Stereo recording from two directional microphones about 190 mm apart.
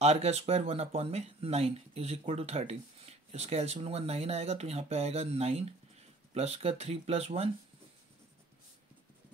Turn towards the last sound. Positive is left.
turn(degrees=-35)  # may be behind; listen again after turning